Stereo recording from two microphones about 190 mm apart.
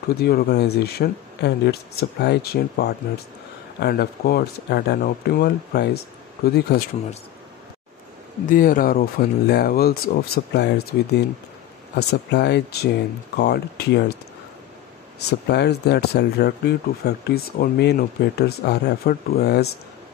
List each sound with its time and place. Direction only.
0.1 s speech: 55° left (ahead or behind)
8.5 s speech: 45° left (ahead or behind)
15.1 s speech: 60° left (ahead or behind)